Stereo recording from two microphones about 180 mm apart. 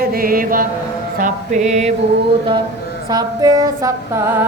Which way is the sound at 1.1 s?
45° right (ahead or behind).